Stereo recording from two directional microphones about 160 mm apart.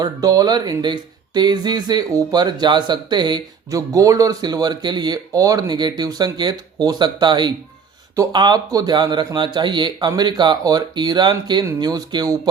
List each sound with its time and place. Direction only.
0.0 s speech: 20° right (ahead or behind)